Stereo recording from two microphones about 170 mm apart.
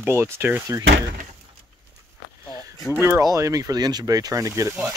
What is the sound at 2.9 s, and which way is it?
Speech, 15° right (ahead or behind).